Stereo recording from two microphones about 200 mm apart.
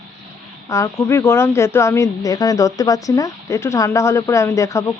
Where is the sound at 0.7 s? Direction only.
15° left (ahead or behind).